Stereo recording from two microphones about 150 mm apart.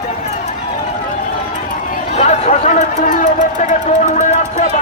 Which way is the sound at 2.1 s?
45° left (ahead or behind).